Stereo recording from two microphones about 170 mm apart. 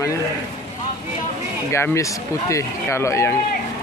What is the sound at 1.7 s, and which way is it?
Speech, 15° left (ahead or behind).